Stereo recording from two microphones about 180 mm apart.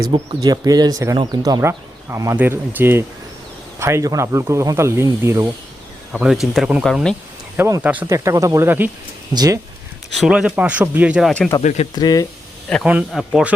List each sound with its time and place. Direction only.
0.0 s speech: 25° right (ahead or behind)
6.1 s speech: 5° right (ahead or behind)
7.5 s speech: 10° right (ahead or behind)
10.2 s speech: 5° right (ahead or behind)
11.6 s speech: 40° left (ahead or behind)
11.9 s speech: 20° left (ahead or behind)
12.6 s a man's voice: 5° left (ahead or behind)